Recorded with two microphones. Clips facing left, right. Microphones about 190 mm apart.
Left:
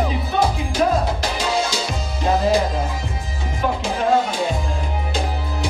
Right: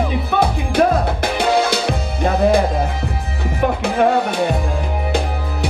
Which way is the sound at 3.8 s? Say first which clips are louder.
Right 2 dB; 60° right (ahead or behind).